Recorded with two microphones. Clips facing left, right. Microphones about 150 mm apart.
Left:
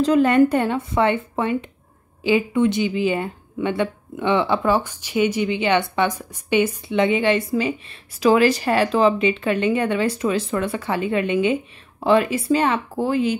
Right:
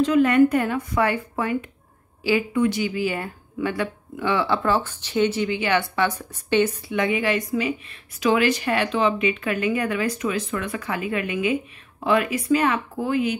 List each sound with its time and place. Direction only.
0.0 s speech: 35° left (ahead or behind); by 6.8 s 15° left (ahead or behind)
6.9 s speech: 25° left (ahead or behind)